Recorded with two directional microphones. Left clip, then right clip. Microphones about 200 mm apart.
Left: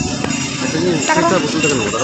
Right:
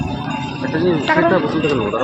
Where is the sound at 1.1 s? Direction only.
10° right (ahead or behind).